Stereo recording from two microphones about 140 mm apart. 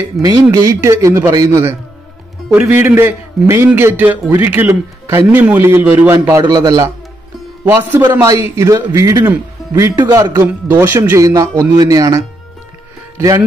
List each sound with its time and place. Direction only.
0.2 s a man's voice: 25° right (ahead or behind)